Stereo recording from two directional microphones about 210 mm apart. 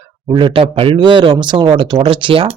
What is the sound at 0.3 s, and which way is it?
Speech, 25° right (ahead or behind).